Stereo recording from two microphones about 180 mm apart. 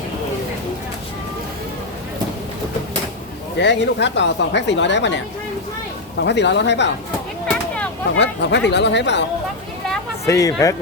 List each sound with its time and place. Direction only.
3.6 s speech: 75° left (ahead or behind)
8.1 s speech: 80° left
10.2 s speech: 20° left (ahead or behind)